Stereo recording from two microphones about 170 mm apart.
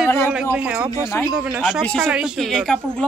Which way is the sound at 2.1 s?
5° right (ahead or behind).